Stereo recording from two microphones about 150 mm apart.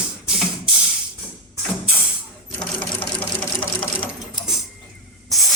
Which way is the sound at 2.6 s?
10° left (ahead or behind).